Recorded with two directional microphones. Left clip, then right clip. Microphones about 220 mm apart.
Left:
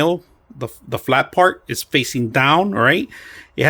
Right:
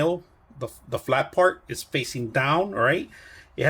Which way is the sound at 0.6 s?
35° left (ahead or behind).